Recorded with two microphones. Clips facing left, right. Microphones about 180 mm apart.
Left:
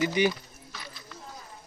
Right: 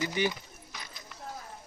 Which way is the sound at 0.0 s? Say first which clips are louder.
Left 5 dB; 15° left (ahead or behind).